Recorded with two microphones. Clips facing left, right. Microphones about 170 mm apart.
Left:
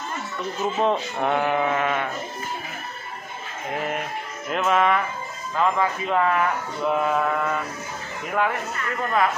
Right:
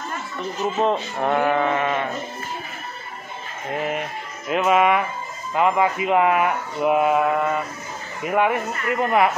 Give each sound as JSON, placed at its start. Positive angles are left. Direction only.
{"t": 0.7, "sound": "speech", "side_deg": 0}
{"t": 3.7, "sound": "speech", "side_deg": -5}